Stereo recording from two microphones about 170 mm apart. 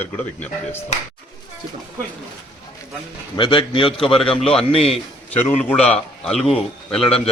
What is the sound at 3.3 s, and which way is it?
Speech, 30° left (ahead or behind).